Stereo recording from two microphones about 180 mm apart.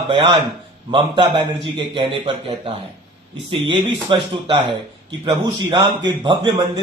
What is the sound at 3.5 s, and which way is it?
A man's voice, 25° right (ahead or behind).